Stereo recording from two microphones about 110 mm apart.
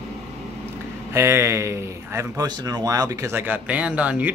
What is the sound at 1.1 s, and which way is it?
Speech, 25° right (ahead or behind).